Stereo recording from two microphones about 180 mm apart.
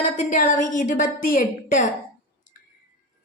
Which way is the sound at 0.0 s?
45° left (ahead or behind).